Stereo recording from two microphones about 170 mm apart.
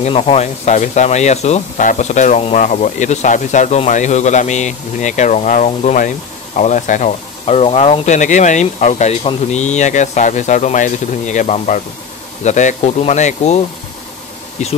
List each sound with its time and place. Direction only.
0.0 s speech: 35° left (ahead or behind)
14.6 s speech: 45° left (ahead or behind)